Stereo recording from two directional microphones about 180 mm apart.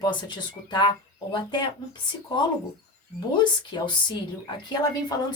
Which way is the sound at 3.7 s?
25° left (ahead or behind).